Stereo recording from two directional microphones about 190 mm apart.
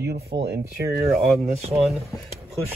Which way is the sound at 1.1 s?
Centre (ahead or behind).